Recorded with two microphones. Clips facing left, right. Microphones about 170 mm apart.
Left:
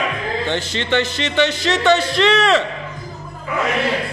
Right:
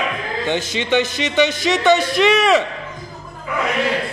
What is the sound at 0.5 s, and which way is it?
Speech, 15° right (ahead or behind).